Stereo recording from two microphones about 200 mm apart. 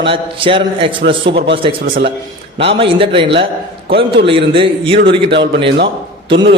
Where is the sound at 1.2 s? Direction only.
60° right (ahead or behind).